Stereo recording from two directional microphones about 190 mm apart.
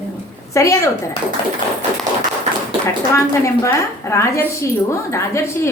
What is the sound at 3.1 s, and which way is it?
A woman's voice, 15° left (ahead or behind).